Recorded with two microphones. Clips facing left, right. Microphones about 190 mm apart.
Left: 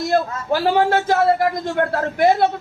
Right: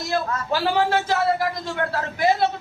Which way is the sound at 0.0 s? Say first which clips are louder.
Left 5 dB; 50° left (ahead or behind).